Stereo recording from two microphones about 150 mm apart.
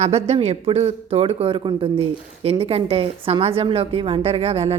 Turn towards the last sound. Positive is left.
turn(degrees=-40)  # may be behind; listen again after turning